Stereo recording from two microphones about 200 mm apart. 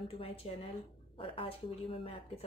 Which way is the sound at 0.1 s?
30° left (ahead or behind).